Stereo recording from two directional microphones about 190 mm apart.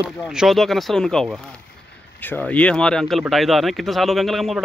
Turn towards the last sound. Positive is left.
turn(degrees=0)  # may be behind; listen again after turning